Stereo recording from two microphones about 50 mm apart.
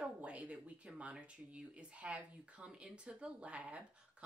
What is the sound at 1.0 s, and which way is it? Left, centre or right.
Speech, right.